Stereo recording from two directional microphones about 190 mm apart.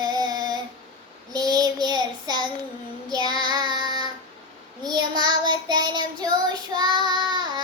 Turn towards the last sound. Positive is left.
turn(degrees=-25)  # may be behind; listen again after turning